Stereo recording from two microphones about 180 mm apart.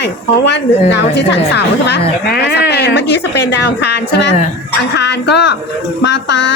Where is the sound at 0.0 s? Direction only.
75° left (ahead or behind).